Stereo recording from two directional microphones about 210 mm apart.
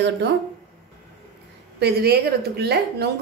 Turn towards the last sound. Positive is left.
turn(degrees=-50)  # may be behind; listen again after turning